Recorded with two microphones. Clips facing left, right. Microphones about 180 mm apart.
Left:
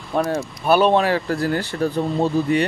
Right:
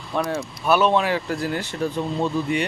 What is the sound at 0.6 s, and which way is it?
Speech, 35° left (ahead or behind).